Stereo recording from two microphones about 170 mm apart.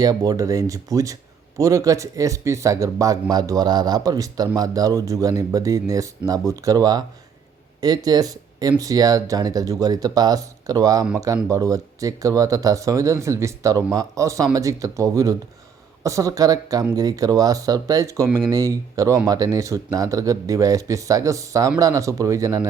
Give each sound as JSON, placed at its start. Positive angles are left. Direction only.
{"t": 0.0, "sound": "speech", "side_deg": -20}
{"t": 18.3, "sound": "speech", "side_deg": -5}
{"t": 18.5, "sound": "speech", "side_deg": -20}